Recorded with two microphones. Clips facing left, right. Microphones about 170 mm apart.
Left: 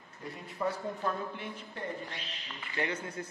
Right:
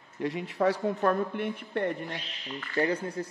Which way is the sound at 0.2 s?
90° right.